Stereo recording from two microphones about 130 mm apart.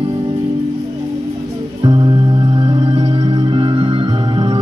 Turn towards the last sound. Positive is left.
turn(degrees=-40)  # may be behind; listen again after turning